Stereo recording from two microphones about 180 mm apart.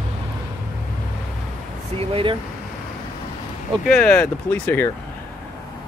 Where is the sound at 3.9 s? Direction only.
10° left (ahead or behind).